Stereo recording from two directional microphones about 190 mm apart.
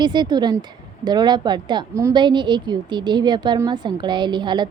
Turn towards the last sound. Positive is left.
turn(degrees=-25)  # may be behind; listen again after turning